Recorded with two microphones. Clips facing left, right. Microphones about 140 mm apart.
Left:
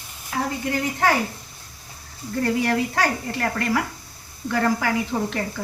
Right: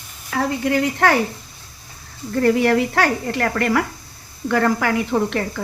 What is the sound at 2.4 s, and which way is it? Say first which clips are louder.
A woman's voice: right 6 dB; 65° right (ahead or behind).